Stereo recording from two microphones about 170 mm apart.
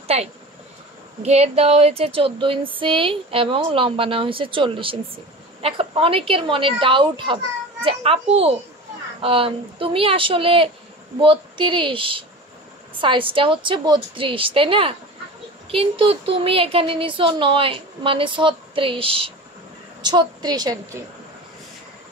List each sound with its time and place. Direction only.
0.1 s speech: 40° right (ahead or behind)
1.2 s female singing: 40° right (ahead or behind)
20.0 s a woman's voice: 25° right (ahead or behind)